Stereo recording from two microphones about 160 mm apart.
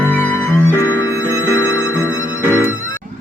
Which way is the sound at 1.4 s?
15° left (ahead or behind).